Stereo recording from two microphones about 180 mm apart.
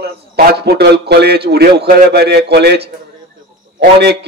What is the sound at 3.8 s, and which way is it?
Speech, 65° right (ahead or behind).